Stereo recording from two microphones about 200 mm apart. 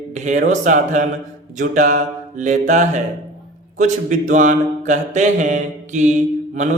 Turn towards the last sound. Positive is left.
turn(degrees=-35)  # may be behind; listen again after turning